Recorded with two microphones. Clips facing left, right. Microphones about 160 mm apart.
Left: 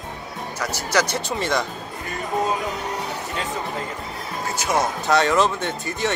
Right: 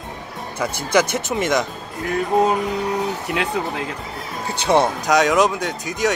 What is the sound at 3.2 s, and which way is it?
Speech, 75° right (ahead or behind).